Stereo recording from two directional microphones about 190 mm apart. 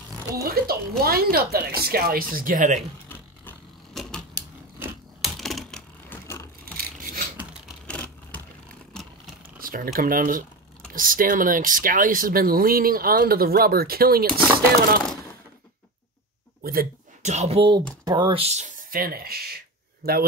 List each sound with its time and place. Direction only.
0.4 s speech: 55° right (ahead or behind)
3.1 s a sound: 5° left (ahead or behind)
4.4 s mechanisms: 10° right (ahead or behind)
5.2 s typewriter: centre (ahead or behind)
6.2 s vehicle: 15° left (ahead or behind)
6.6 s rub: 50° right (ahead or behind)
7.8 s a sound: 5° left (ahead or behind)
9.6 s a sound: 50° right (ahead or behind)
9.9 s speech: 45° right (ahead or behind)
16.6 s speech: 45° right (ahead or behind)